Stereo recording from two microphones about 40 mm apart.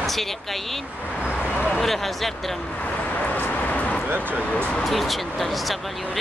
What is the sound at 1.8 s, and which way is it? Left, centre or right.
Speech, centre.